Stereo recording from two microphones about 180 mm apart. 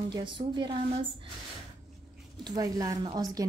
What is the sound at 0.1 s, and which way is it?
Speech, 25° right (ahead or behind).